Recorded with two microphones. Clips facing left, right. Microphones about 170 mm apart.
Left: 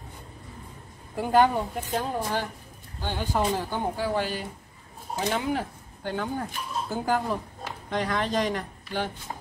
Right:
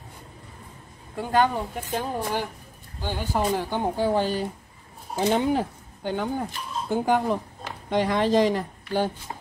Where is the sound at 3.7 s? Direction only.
25° right (ahead or behind).